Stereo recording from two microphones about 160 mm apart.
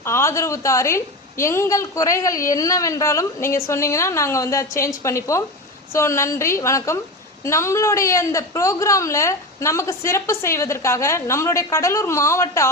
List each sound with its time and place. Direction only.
0.0 s a woman's voice: 15° left (ahead or behind)